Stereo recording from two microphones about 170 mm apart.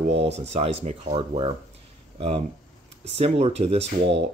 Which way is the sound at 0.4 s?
35° right (ahead or behind).